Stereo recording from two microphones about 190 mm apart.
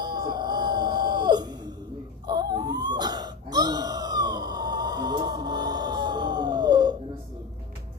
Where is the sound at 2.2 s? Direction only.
20° right (ahead or behind).